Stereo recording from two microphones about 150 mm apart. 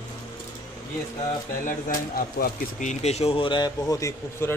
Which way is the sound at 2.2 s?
75° left (ahead or behind).